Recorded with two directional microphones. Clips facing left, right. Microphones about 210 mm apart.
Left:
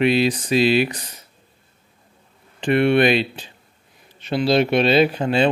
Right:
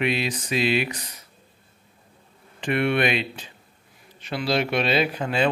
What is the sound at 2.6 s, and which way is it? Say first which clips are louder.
A man's voice: left 6 dB; 30° left (ahead or behind).